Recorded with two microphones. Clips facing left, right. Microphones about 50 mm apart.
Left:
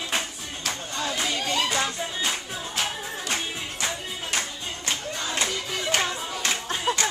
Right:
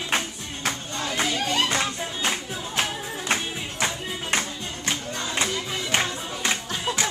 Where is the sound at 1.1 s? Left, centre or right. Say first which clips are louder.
Right 3 dB; right.